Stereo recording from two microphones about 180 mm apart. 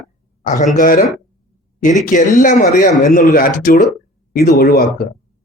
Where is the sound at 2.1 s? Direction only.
45° left (ahead or behind).